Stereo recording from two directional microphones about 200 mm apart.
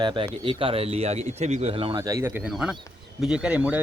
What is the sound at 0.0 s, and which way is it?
Speech, 25° right (ahead or behind).